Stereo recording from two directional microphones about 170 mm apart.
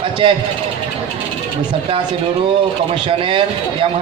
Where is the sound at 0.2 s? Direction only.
30° right (ahead or behind).